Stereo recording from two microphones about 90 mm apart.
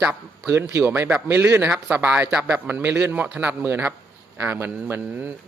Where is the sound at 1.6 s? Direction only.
15° right (ahead or behind).